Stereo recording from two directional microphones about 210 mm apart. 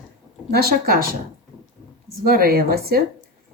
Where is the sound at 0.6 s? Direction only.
45° right (ahead or behind).